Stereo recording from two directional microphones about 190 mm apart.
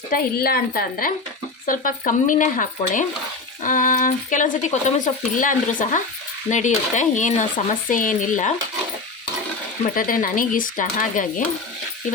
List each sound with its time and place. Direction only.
0.1 s speech: 55° left (ahead or behind)
9.8 s speech: 45° left (ahead or behind)